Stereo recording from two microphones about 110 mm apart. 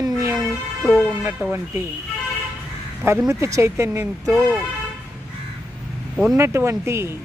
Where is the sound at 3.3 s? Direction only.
30° right (ahead or behind).